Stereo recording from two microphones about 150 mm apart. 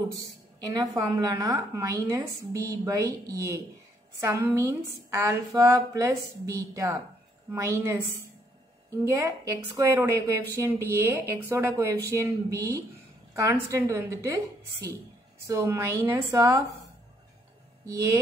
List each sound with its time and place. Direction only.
0.7 s a woman's voice: 25° right (ahead or behind)
17.8 s a woman's voice: 20° right (ahead or behind)